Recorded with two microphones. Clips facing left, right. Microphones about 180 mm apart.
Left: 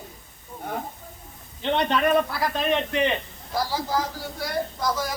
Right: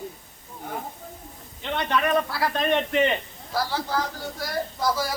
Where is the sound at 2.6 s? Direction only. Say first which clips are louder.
Right 2 dB; centre (ahead or behind).